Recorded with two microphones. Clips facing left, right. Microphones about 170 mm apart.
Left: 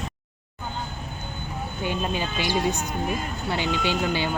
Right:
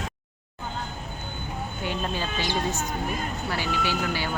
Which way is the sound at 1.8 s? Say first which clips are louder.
Left 3 dB; 15° left (ahead or behind).